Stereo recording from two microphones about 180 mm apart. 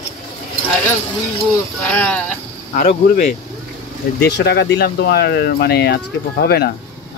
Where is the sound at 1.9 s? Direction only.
5° left (ahead or behind).